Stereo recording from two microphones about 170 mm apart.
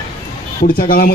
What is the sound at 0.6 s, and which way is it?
Speech, 55° left (ahead or behind).